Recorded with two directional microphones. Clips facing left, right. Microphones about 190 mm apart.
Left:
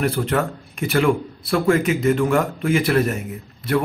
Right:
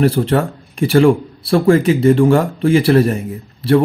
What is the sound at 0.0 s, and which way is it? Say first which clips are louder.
Speech: right 6 dB; 30° right (ahead or behind).